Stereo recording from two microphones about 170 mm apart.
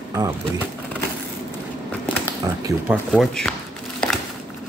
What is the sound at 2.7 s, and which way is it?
Speech, 20° right (ahead or behind).